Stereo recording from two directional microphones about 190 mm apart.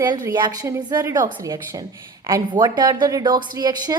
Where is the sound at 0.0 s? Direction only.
20° right (ahead or behind).